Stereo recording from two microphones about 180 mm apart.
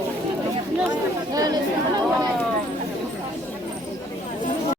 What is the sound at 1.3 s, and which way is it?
Speech, 20° right (ahead or behind).